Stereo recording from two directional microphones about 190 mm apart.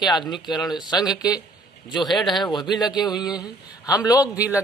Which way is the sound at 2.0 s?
Centre (ahead or behind).